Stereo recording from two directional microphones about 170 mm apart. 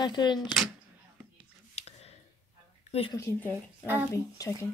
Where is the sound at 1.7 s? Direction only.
40° left (ahead or behind).